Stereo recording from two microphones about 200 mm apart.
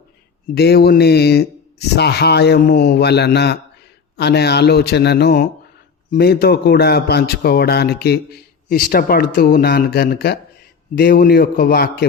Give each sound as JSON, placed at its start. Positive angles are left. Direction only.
{"t": 0.5, "sound": "a man's voice", "side_deg": 55}